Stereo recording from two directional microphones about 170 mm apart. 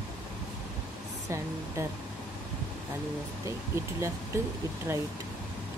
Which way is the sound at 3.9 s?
15° right (ahead or behind).